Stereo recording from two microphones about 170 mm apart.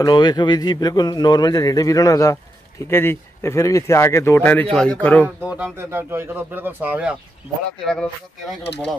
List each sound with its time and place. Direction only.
0.0 s a man's voice: 25° left (ahead or behind); by 5.3 s 10° left (ahead or behind)
5.4 s speech: 10° right (ahead or behind)